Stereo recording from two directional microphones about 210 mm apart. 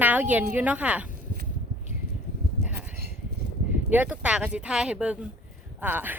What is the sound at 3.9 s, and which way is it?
Speech, 5° right (ahead or behind).